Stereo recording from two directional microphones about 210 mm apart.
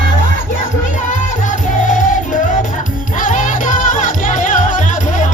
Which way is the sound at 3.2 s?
35° left (ahead or behind).